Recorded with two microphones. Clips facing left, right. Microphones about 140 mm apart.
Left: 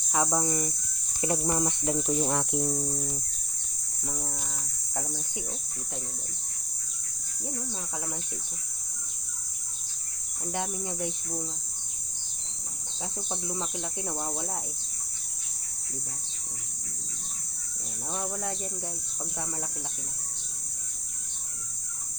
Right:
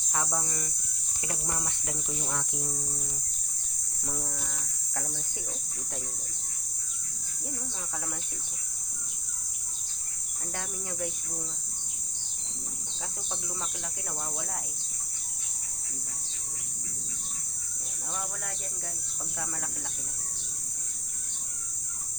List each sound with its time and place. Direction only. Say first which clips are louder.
0.1 s speech: left 6 dB; 20° left (ahead or behind)
2.2 s cricket: left 8 dB; 55° left (ahead or behind)
10.5 s speech: left 6 dB; 20° left (ahead or behind)